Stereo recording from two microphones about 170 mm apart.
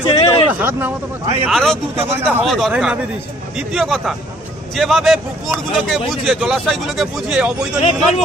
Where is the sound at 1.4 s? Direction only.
Centre (ahead or behind).